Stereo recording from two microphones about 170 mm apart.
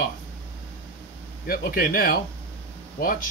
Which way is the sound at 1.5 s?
60° left (ahead or behind).